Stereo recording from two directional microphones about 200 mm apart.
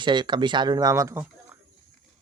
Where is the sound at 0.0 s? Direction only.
25° right (ahead or behind).